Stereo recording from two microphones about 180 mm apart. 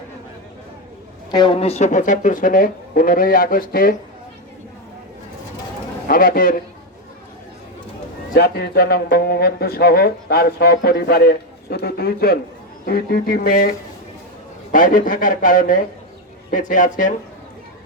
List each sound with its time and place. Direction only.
1.3 s speech: 25° left (ahead or behind); by 3.9 s 50° left (ahead or behind)
6.1 s speech: 50° left (ahead or behind)
8.3 s speech: 65° left (ahead or behind)
14.7 s speech: 50° left (ahead or behind)